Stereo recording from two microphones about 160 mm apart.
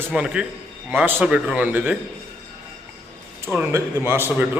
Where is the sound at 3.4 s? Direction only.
15° right (ahead or behind).